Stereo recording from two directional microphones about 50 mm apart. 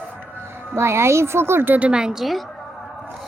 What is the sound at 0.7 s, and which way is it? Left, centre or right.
Speech, right.